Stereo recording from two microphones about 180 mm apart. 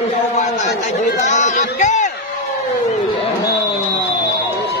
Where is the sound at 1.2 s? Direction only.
40° left (ahead or behind).